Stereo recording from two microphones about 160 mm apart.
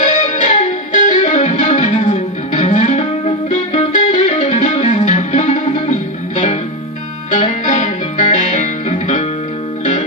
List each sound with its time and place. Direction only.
0.0 s music: 50° left (ahead or behind)